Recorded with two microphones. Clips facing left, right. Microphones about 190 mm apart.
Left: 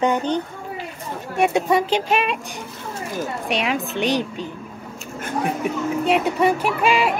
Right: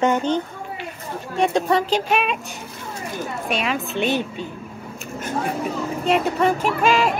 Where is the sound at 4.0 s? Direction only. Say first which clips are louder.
Right 1 dB; 10° right (ahead or behind).